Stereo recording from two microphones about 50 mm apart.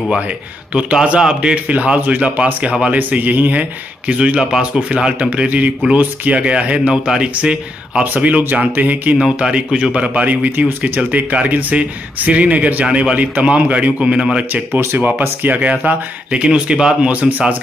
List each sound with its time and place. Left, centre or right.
0.7 s a man's voice: centre
6.9 s speech: centre
8.0 s a man's voice: right
9.2 s speech: centre
15.0 s a man's voice: right
16.4 s speech: centre
17.1 s speech: right